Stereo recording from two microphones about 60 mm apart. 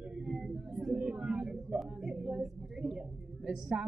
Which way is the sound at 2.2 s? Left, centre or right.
Centre.